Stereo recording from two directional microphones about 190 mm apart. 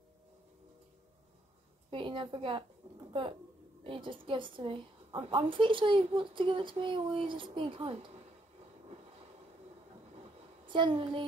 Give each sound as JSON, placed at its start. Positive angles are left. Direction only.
{"t": 1.9, "sound": "a woman's voice", "side_deg": -25}
{"t": 10.7, "sound": "a woman's voice", "side_deg": -25}